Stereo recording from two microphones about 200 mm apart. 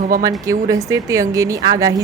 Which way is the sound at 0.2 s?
15° right (ahead or behind).